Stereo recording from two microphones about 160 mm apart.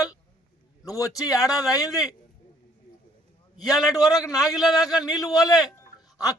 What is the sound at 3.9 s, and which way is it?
Speech, 25° left (ahead or behind).